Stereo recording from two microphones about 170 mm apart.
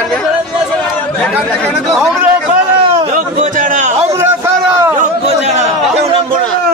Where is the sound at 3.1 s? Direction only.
50° right (ahead or behind).